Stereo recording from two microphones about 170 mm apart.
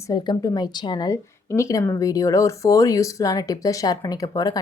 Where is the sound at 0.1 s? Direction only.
25° left (ahead or behind).